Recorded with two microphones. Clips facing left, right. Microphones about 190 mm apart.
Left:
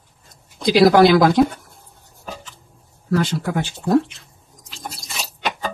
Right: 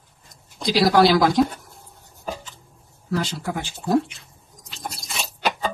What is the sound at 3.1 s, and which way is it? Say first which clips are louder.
Speech: left 5 dB; 60° left (ahead or behind).